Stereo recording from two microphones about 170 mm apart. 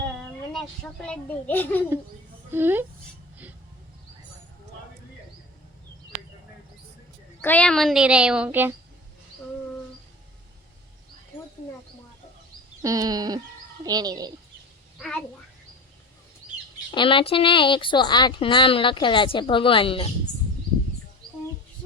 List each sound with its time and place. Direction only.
1.0 s a child's voice: 10° left (ahead or behind)
2.5 s a woman's voice: 10° right (ahead or behind)
7.4 s speech: 10° left (ahead or behind); by 8.7 s 10° right (ahead or behind)
12.8 s a sound: 20° right (ahead or behind)
16.9 s speech: 30° left (ahead or behind)